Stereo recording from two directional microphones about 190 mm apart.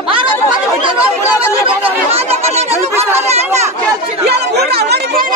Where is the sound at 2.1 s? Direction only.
30° right (ahead or behind).